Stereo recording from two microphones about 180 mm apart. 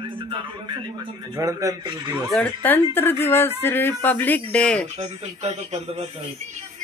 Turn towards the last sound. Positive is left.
turn(degrees=-35)  # may be behind; listen again after turning